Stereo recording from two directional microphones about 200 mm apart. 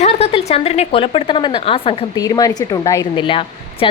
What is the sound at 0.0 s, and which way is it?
A woman's voice, 30° left (ahead or behind).